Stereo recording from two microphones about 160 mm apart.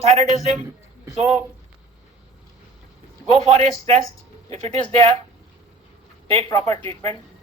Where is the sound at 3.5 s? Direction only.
45° right (ahead or behind).